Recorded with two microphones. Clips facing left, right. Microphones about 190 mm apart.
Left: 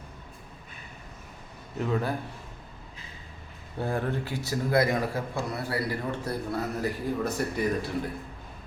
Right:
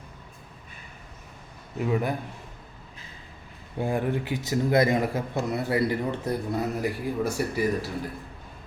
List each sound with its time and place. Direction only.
1.8 s speech: 15° right (ahead or behind)
3.8 s speech: 15° right (ahead or behind)